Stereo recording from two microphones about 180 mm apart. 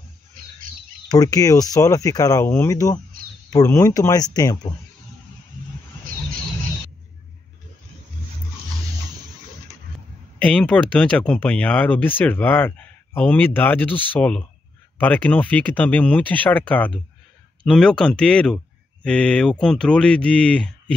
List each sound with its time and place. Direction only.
1.0 s speech: 20° left (ahead or behind)
10.4 s speech: 5° left (ahead or behind)